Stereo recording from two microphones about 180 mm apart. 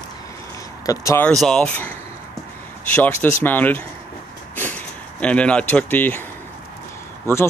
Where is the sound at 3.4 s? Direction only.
10° left (ahead or behind).